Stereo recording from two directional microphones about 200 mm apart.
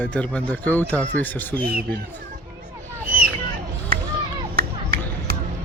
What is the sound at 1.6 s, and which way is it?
Speech, 50° right (ahead or behind).